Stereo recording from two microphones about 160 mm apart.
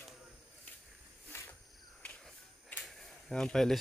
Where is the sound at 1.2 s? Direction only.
15° left (ahead or behind).